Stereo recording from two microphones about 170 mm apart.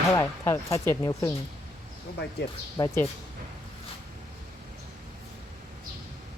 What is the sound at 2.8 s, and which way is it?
Speech, 25° left (ahead or behind).